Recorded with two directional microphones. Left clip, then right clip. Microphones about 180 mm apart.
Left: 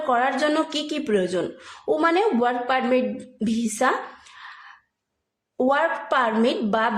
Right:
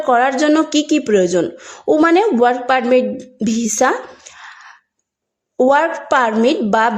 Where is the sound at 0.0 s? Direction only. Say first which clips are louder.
Right 7 dB; 45° right (ahead or behind).